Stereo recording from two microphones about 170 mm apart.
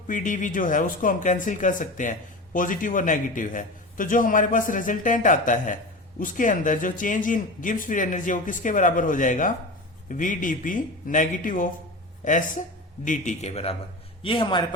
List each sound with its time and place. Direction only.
0.1 s a man's voice: 50° left (ahead or behind); by 14.6 s 30° left (ahead or behind)